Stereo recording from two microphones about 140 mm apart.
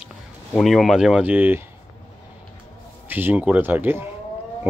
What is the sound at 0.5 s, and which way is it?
Speech, centre (ahead or behind).